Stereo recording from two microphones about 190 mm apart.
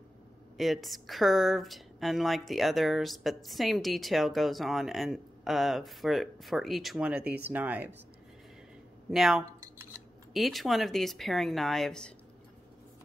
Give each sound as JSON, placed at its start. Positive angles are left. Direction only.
{"t": 0.6, "sound": "speech", "side_deg": 0}
{"t": 9.1, "sound": "speech", "side_deg": 0}